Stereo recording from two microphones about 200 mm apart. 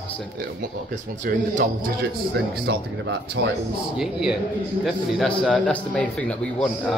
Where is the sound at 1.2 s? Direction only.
40° right (ahead or behind).